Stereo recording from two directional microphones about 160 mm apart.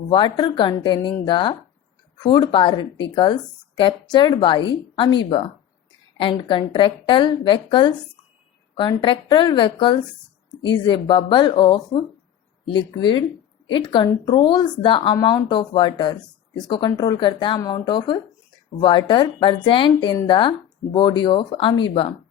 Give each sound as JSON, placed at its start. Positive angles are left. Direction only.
{"t": 0.1, "sound": "speech", "side_deg": 30}
{"t": 6.1, "sound": "a woman's voice", "side_deg": 30}